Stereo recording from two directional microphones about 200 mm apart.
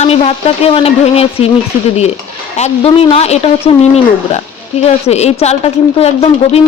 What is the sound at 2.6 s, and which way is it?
Speech, 30° left (ahead or behind).